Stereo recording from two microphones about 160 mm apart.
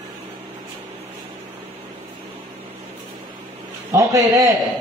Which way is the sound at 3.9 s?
20° right (ahead or behind).